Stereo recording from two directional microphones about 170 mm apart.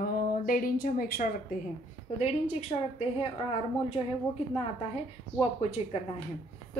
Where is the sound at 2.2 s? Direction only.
40° left (ahead or behind).